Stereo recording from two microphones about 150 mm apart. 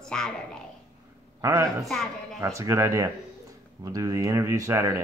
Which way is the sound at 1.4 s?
20° right (ahead or behind).